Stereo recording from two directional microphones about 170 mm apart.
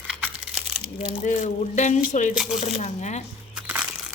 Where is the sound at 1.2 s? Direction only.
45° left (ahead or behind).